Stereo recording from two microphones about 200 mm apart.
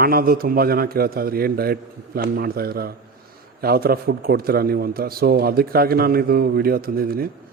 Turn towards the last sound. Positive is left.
turn(degrees=-50)  # may be behind; listen again after turning